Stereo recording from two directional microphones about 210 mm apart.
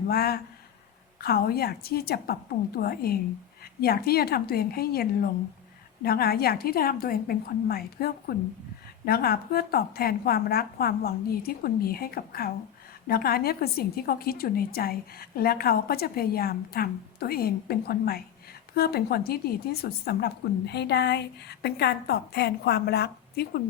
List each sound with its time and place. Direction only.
0.1 s a woman's voice: 45° left (ahead or behind)